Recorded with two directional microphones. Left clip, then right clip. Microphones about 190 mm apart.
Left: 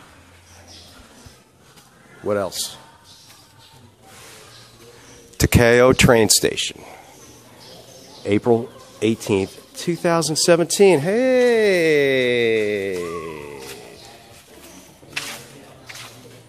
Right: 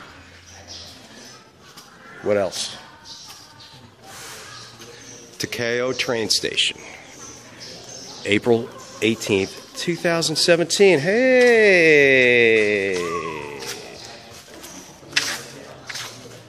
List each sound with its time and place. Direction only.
2.2 s speech: 20° left (ahead or behind)
5.6 s speech: 45° left (ahead or behind)
8.2 s speech: 20° left (ahead or behind)
15.2 s a sound: centre (ahead or behind)